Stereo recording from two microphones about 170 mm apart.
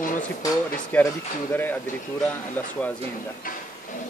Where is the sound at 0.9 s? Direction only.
10° left (ahead or behind).